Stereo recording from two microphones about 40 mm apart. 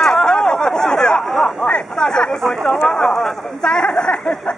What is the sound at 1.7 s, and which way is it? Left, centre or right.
Speech, centre.